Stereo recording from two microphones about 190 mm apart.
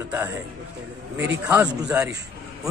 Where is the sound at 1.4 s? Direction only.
15° right (ahead or behind).